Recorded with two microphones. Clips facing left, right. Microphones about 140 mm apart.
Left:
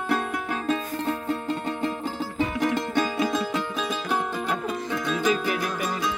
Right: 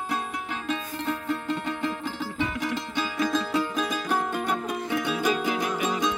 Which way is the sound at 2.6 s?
55° left (ahead or behind).